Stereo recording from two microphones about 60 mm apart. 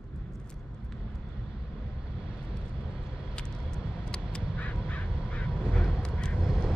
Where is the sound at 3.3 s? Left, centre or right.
Centre.